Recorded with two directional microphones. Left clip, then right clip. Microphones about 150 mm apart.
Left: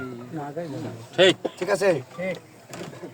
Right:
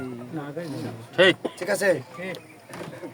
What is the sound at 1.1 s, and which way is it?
Speech, 5° left (ahead or behind).